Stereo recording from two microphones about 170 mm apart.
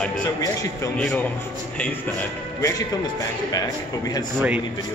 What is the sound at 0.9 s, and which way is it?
Speech, 5° left (ahead or behind).